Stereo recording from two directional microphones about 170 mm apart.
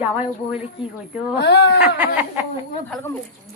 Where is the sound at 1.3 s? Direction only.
90° left.